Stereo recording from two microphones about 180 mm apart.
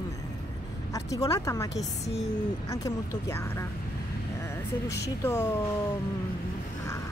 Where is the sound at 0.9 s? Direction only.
20° left (ahead or behind).